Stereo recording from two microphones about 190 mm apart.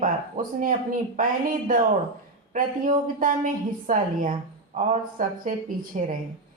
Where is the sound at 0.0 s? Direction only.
45° right (ahead or behind).